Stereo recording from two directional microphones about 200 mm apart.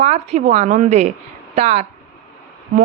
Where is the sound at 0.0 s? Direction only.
35° right (ahead or behind).